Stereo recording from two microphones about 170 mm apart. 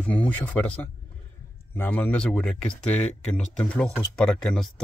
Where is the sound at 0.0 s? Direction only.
10° left (ahead or behind).